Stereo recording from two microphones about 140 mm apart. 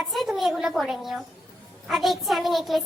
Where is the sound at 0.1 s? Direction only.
Centre (ahead or behind).